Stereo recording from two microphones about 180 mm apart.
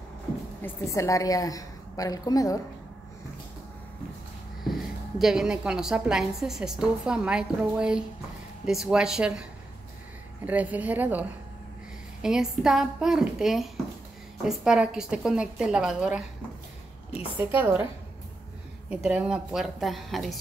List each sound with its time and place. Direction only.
0.6 s a woman's voice: 10° left (ahead or behind)
5.2 s a woman's voice: 5° right (ahead or behind)
17.4 s a woman's voice: 10° right (ahead or behind)
18.9 s a woman's voice: 5° right (ahead or behind)